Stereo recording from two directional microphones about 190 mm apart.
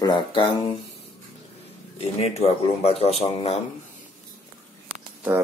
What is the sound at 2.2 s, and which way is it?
Speech, 35° left (ahead or behind).